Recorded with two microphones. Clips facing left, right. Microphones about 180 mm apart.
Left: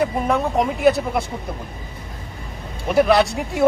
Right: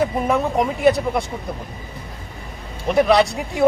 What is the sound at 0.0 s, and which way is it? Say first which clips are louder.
Speech: right 1 dB; centre (ahead or behind).